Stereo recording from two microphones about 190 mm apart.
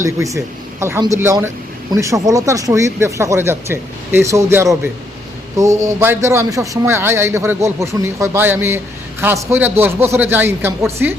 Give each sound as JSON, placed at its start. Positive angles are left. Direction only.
{"t": 0.0, "sound": "a man's voice", "side_deg": -15}